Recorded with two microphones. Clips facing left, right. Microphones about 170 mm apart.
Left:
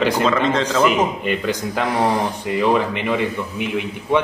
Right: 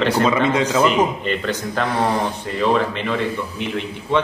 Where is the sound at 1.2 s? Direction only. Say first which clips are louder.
Left 1 dB; 10° left (ahead or behind).